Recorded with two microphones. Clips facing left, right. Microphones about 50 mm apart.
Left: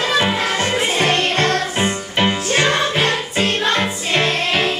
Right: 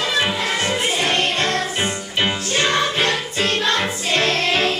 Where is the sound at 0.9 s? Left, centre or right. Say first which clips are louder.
Left 3 dB; left.